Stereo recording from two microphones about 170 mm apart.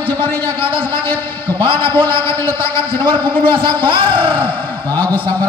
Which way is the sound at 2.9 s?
30° right (ahead or behind).